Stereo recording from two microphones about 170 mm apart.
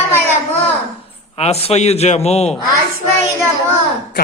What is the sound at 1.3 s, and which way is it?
A man's voice, 40° left (ahead or behind).